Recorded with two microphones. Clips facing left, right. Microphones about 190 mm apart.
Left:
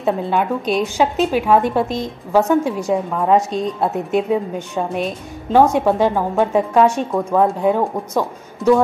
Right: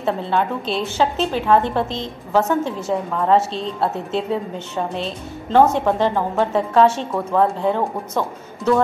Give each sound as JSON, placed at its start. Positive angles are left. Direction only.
{"t": 0.0, "sound": "a woman's voice", "side_deg": 15}